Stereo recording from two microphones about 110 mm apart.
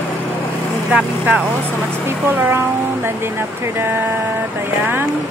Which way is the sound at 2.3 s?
20° right (ahead or behind).